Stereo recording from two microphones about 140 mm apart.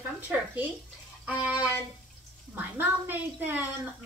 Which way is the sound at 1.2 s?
10° right (ahead or behind).